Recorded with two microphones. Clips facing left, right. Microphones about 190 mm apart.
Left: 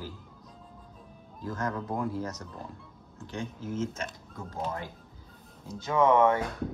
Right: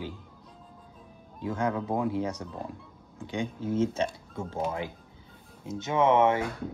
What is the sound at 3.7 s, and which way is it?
Speech, 30° right (ahead or behind).